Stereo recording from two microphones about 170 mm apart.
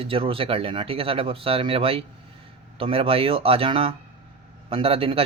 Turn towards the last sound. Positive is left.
turn(degrees=-35)  # may be behind; listen again after turning